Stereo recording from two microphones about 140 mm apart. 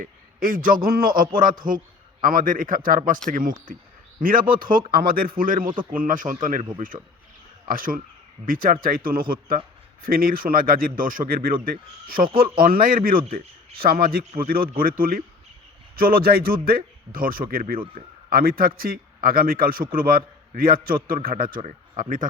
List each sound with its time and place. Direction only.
0.0 s a man's voice: 90° right; by 7.0 s 70° right (ahead or behind)
7.7 s a man's voice: 85° right
21.6 s speech: 65° right (ahead or behind)